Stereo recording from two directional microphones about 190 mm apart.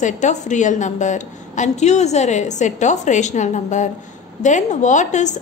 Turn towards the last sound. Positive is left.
turn(degrees=40)  # may be behind; listen again after turning